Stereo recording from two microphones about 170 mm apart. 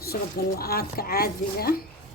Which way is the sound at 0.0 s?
65° left (ahead or behind).